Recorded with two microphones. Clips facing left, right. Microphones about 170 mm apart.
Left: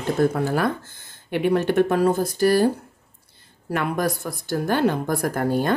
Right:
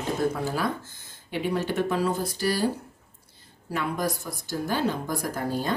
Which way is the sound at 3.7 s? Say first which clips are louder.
Left 5 dB; 65° left (ahead or behind).